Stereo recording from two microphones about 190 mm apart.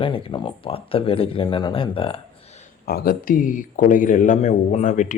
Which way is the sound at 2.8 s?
50° left (ahead or behind).